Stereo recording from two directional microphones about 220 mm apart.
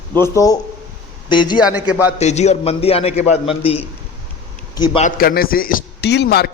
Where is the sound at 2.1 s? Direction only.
30° left (ahead or behind).